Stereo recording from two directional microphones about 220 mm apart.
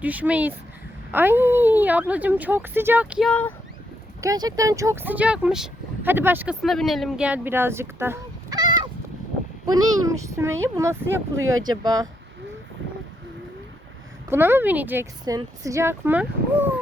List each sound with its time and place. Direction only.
0.0 s a woman's voice: 5° right (ahead or behind)
4.2 s a woman's voice: 15° right (ahead or behind)
11.3 s speech: 70° right (ahead or behind)
11.8 s a woman's voice: 15° right (ahead or behind)
14.3 s a woman's voice: 10° right (ahead or behind)